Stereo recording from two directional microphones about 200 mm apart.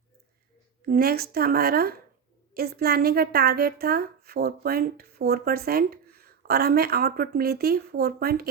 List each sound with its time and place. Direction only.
0.9 s a woman's voice: 50° right (ahead or behind)